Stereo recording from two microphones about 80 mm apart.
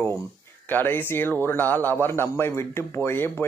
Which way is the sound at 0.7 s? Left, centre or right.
Left.